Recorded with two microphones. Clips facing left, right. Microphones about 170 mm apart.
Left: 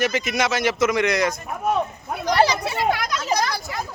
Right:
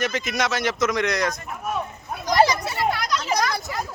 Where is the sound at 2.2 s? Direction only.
65° left (ahead or behind).